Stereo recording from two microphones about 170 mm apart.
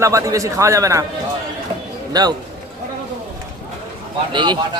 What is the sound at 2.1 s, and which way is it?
Speech, 25° right (ahead or behind).